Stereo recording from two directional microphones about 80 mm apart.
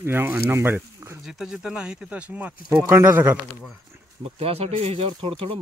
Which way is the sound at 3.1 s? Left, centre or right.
Right.